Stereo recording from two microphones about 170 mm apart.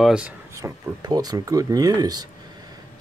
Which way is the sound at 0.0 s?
5° right (ahead or behind).